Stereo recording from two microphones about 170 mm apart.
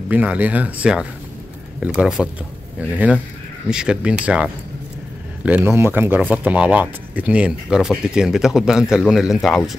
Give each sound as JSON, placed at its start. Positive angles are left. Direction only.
{"t": 0.1, "sound": "speech", "side_deg": -10}
{"t": 5.4, "sound": "speech", "side_deg": -10}